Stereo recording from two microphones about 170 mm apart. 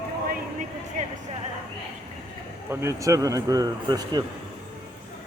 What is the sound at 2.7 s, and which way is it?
Speech, 15° right (ahead or behind).